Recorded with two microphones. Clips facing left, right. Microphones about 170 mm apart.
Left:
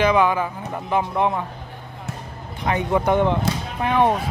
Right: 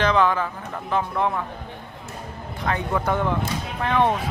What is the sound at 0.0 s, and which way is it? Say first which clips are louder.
A man's voice: left 2 dB; 10° left (ahead or behind).